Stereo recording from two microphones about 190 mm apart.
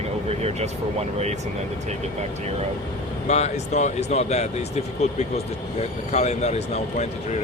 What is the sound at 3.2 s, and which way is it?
Speech, 35° left (ahead or behind).